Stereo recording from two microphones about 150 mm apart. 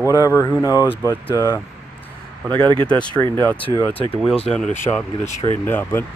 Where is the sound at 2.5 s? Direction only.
30° right (ahead or behind).